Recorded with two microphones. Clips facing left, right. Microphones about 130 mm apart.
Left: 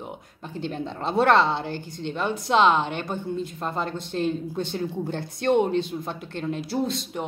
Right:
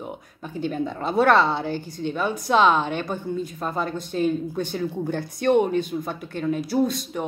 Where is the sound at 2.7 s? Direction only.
50° right (ahead or behind).